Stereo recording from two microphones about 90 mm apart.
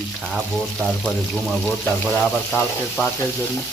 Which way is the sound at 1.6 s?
10° left (ahead or behind).